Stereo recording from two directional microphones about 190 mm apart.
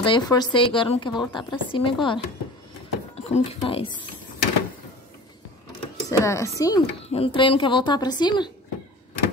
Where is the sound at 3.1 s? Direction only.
35° left (ahead or behind).